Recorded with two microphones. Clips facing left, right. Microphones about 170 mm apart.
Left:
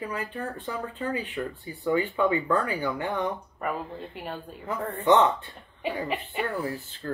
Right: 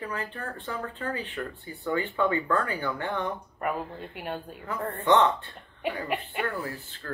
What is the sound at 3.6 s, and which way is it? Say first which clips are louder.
Speech: right 1 dB; centre (ahead or behind).